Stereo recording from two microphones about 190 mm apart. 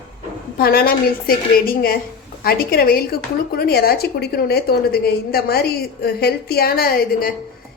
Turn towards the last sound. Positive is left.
turn(degrees=50)  # may be behind; listen again after turning